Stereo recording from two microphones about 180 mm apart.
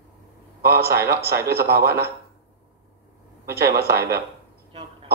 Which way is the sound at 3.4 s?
15° right (ahead or behind).